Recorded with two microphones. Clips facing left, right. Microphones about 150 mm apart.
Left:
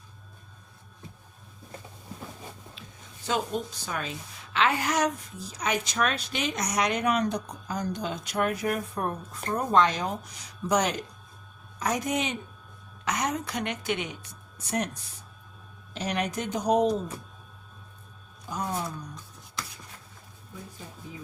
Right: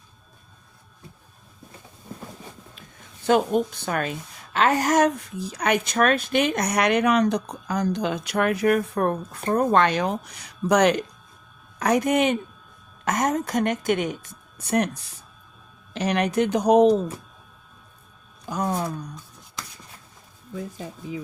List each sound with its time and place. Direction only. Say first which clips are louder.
3.2 s a woman's voice: right 9 dB; 60° right (ahead or behind)
15.9 s speech: right 6 dB; 70° right (ahead or behind)
18.4 s speech: right 6 dB; 80° right